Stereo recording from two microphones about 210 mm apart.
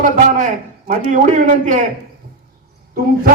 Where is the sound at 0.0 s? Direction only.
40° right (ahead or behind).